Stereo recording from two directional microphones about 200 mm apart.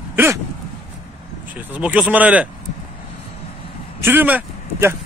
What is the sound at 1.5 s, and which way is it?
Speech, 10° right (ahead or behind).